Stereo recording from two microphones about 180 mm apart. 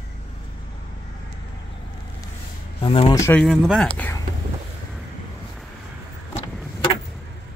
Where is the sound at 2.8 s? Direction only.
25° left (ahead or behind).